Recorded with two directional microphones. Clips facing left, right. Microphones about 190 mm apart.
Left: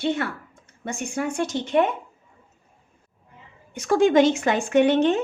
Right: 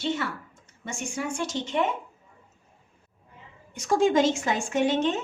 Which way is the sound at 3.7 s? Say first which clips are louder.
Left 4 dB; 60° left (ahead or behind).